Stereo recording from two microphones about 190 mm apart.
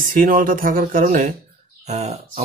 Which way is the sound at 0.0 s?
45° right (ahead or behind).